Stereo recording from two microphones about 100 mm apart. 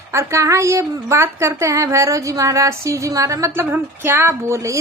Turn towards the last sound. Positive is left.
turn(degrees=-30)  # may be behind; listen again after turning